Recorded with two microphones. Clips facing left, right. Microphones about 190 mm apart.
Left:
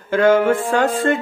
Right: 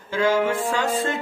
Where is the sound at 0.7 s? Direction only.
55° left (ahead or behind).